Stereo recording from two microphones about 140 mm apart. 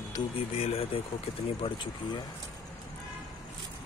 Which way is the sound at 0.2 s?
30° left (ahead or behind).